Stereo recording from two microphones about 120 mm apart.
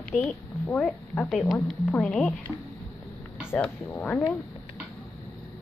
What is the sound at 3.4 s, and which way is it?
Speech, 15° left (ahead or behind).